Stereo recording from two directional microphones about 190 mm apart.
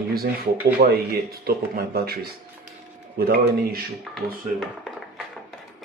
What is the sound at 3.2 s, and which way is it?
Speech, 55° right (ahead or behind).